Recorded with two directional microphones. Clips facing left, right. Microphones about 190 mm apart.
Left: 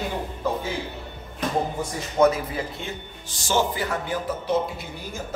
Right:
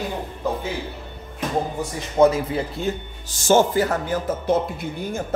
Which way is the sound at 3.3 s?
45° right (ahead or behind).